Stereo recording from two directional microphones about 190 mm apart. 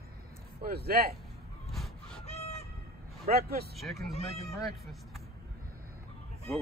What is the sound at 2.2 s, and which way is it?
Honk, 35° left (ahead or behind).